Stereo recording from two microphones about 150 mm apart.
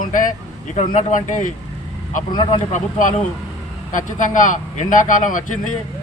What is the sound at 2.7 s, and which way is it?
A man's voice, 60° left (ahead or behind).